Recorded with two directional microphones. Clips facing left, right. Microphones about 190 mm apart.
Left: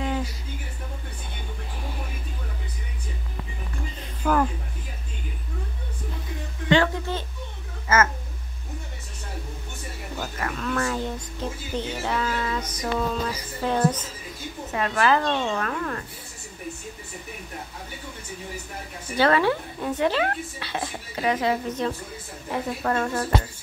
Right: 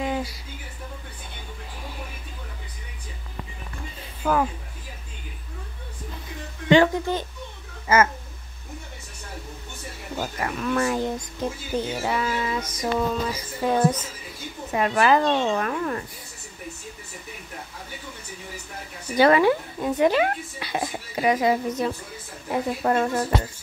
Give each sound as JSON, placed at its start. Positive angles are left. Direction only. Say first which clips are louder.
{"t": 0.0, "sound": "a sound", "louder": "right 1 dB", "side_deg": -10}
{"t": 4.2, "sound": "speech", "louder": "even", "side_deg": -5}
{"t": 6.7, "sound": "a woman's voice", "louder": "right 4 dB", "side_deg": -15}
{"t": 10.1, "sound": "a woman's voice", "louder": "right 3 dB", "side_deg": -15}
{"t": 19.1, "sound": "a woman's voice", "louder": "right 3 dB", "side_deg": -15}